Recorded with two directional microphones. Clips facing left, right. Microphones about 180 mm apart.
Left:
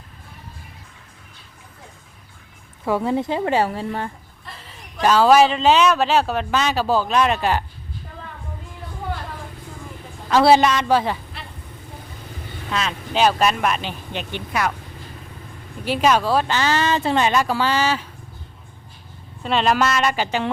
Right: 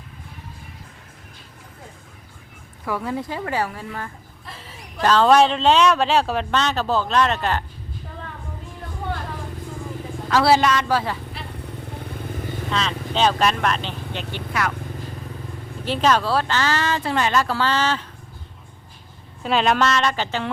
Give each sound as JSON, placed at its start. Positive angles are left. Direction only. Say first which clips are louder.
{"t": 2.8, "sound": "a woman's voice", "louder": "left 5 dB", "side_deg": 25}
{"t": 4.4, "sound": "a sound", "louder": "right 1 dB", "side_deg": 0}
{"t": 5.0, "sound": "speech", "louder": "left 1 dB", "side_deg": 5}
{"t": 10.2, "sound": "a woman's voice", "louder": "left 3 dB", "side_deg": 20}
{"t": 12.7, "sound": "speech", "louder": "left 2 dB", "side_deg": 10}
{"t": 15.8, "sound": "speech", "louder": "left 1 dB", "side_deg": 10}
{"t": 19.4, "sound": "speech", "louder": "even", "side_deg": 0}